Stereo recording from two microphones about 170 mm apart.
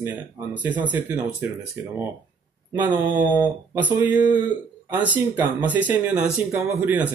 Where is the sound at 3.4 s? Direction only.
10° right (ahead or behind).